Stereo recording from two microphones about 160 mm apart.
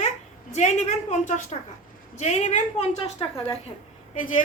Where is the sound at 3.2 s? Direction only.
30° left (ahead or behind).